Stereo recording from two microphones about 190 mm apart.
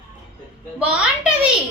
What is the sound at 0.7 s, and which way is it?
Speech, 5° right (ahead or behind).